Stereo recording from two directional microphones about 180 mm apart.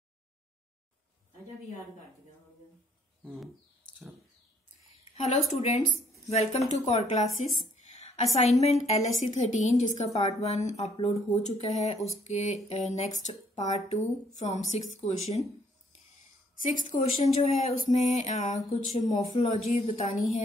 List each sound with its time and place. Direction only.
5.5 s a woman's voice: 35° left (ahead or behind)
7.7 s a sound: 35° left (ahead or behind)
8.4 s a woman's voice: 40° left (ahead or behind)
16.5 s a woman's voice: 45° left (ahead or behind)
16.9 s a woman's voice: 35° left (ahead or behind)